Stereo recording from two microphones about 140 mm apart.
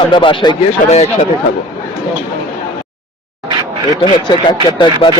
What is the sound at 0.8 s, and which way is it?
Speech, 70° left (ahead or behind).